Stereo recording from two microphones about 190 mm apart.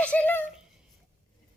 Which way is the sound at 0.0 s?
5° left (ahead or behind).